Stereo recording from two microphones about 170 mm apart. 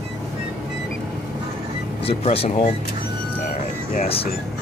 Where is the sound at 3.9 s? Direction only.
40° left (ahead or behind).